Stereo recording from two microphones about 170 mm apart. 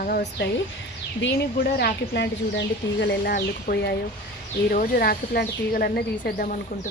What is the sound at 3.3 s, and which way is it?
Speech, 70° left (ahead or behind).